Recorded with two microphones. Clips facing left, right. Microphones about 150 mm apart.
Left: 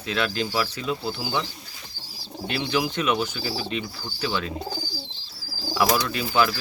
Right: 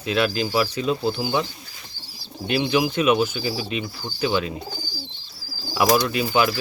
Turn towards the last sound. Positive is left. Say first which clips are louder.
# right 2 dB
turn(degrees=-15)  # may be behind; listen again after turning